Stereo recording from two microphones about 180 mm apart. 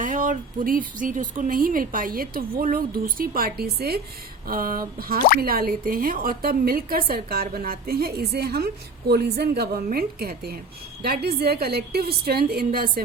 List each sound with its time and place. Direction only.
0.0 s a woman's voice: 45° right (ahead or behind)